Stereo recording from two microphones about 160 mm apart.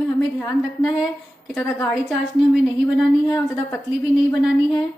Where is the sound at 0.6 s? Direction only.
Centre (ahead or behind).